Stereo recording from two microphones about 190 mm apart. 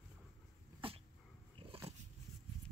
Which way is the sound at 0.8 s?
25° right (ahead or behind).